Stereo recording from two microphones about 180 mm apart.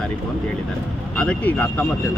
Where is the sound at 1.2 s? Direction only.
5° left (ahead or behind).